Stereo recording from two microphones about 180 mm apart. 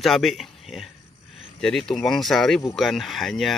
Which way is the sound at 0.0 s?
Centre (ahead or behind).